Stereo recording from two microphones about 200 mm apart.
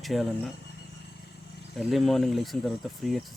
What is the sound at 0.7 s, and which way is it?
Vehicle, 55° left (ahead or behind).